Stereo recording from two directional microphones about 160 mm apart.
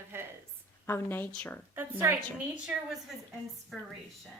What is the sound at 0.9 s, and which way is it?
Speech, 15° left (ahead or behind).